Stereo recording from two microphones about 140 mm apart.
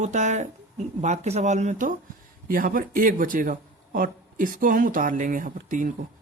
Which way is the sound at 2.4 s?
85° right.